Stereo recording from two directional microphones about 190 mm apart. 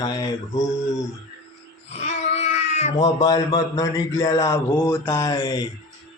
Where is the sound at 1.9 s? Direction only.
35° left (ahead or behind).